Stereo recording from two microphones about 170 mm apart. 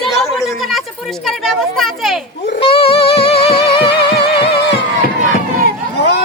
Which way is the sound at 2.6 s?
35° left (ahead or behind).